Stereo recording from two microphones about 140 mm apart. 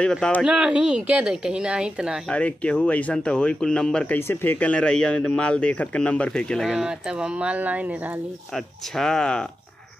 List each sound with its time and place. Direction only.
0.0 s speech: 5° left (ahead or behind)
0.5 s speech: 10° right (ahead or behind)
2.2 s speech: 10° left (ahead or behind); by 7.9 s 10° right (ahead or behind)
8.5 s speech: 5° left (ahead or behind)